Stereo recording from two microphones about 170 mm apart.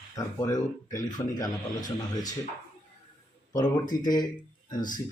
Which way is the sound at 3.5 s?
25° left (ahead or behind).